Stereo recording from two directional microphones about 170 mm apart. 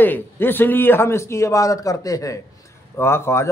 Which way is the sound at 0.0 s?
10° left (ahead or behind).